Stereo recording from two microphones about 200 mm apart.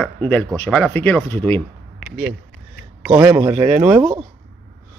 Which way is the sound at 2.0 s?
5° right (ahead or behind).